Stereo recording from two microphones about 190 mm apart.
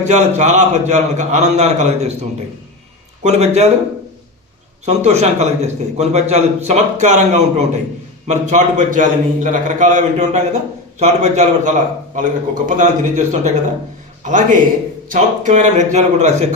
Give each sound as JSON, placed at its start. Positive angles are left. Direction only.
{"t": 0.0, "sound": "a man's voice", "side_deg": -40}
{"t": 3.2, "sound": "a man's voice", "side_deg": -35}
{"t": 4.9, "sound": "a man's voice", "side_deg": -35}